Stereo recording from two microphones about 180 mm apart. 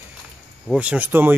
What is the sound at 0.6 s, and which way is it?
Speech, 5° right (ahead or behind).